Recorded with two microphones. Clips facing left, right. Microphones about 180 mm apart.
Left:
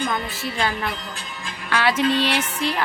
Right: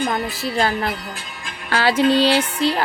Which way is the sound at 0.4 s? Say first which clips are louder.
Right 5 dB; 40° right (ahead or behind).